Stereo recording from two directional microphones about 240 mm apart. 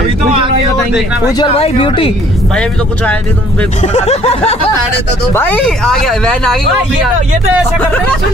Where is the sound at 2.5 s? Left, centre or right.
Centre.